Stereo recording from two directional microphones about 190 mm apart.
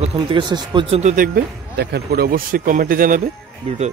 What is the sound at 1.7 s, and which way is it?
Speech, 55° right (ahead or behind).